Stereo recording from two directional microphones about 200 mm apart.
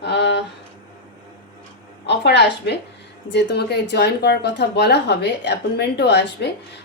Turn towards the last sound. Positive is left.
turn(degrees=55)  # may be behind; listen again after turning